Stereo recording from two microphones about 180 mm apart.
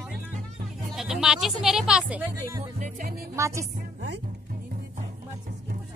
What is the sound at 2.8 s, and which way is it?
Music, 50° right (ahead or behind).